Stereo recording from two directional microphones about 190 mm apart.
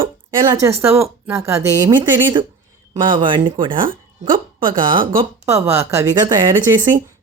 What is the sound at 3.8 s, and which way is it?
Speech, 45° right (ahead or behind).